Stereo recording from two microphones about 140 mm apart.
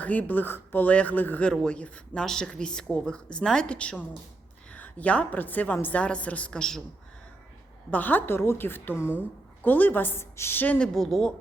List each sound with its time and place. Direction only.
0.0 s speech: 10° left (ahead or behind)
7.9 s speech: 10° left (ahead or behind)